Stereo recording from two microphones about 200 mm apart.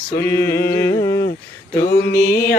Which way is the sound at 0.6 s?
55° left (ahead or behind).